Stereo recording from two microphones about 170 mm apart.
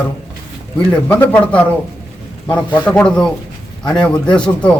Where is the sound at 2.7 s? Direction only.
5° left (ahead or behind).